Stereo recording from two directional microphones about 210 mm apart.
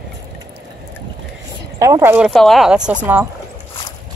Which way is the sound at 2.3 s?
Centre (ahead or behind).